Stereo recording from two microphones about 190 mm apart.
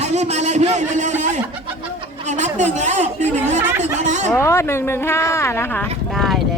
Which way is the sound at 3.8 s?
40° right (ahead or behind).